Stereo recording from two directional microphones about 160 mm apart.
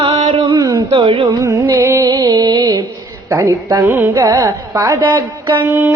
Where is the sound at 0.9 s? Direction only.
35° right (ahead or behind).